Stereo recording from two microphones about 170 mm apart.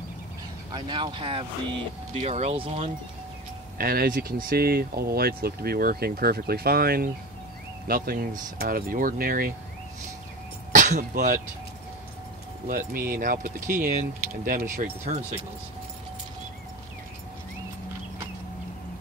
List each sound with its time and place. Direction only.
0.7 s speech: 30° right (ahead or behind)
2.1 s speech: 40° right (ahead or behind)
3.7 s speech: 60° right (ahead or behind)
10.7 s a sound: 45° right (ahead or behind)
12.6 s speech: 55° right (ahead or behind)
15.1 s speech: 45° right (ahead or behind)